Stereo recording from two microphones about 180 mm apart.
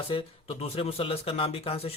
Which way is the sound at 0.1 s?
30° left (ahead or behind).